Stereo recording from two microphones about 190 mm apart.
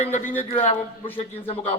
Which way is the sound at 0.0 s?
40° left (ahead or behind).